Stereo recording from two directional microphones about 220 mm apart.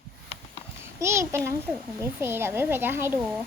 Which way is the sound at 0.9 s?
15° right (ahead or behind).